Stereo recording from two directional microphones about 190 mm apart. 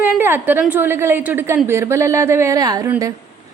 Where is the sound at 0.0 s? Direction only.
10° right (ahead or behind).